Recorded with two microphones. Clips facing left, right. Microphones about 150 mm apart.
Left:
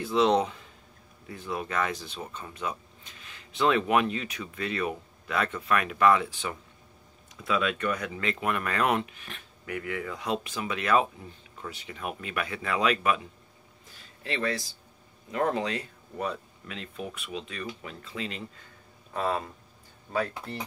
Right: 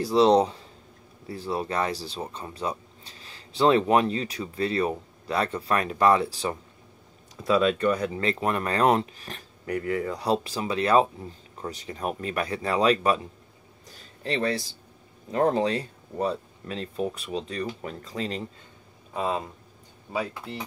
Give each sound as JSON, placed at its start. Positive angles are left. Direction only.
{"t": 0.0, "sound": "speech", "side_deg": -35}
{"t": 13.8, "sound": "a sound", "side_deg": -40}
{"t": 15.3, "sound": "speech", "side_deg": -35}
{"t": 19.1, "sound": "speech", "side_deg": -20}
{"t": 20.1, "sound": "speech", "side_deg": -10}